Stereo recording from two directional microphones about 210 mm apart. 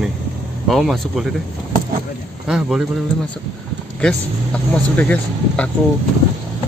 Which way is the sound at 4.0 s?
5° left (ahead or behind).